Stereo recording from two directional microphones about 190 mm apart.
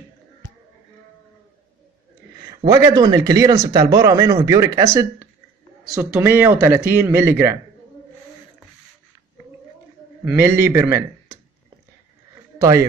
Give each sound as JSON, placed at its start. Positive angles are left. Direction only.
{"t": 2.3, "sound": "speech", "side_deg": -20}
{"t": 10.2, "sound": "speech", "side_deg": -10}
{"t": 12.5, "sound": "a man's voice", "side_deg": -15}